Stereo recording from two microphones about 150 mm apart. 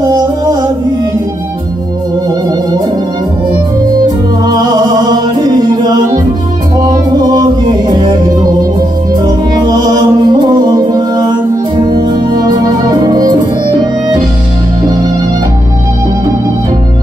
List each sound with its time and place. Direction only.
0.0 s music: 25° right (ahead or behind)
5.1 s music: 25° right (ahead or behind)
9.2 s music: 25° right (ahead or behind)